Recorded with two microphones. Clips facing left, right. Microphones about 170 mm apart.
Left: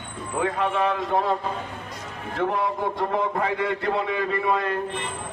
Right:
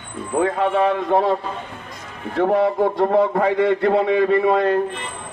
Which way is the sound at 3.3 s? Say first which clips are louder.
Right 8 dB; 45° right (ahead or behind).